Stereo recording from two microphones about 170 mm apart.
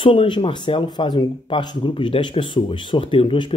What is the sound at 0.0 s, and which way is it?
Speech, 30° left (ahead or behind).